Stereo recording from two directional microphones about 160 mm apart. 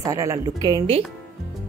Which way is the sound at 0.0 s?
20° right (ahead or behind).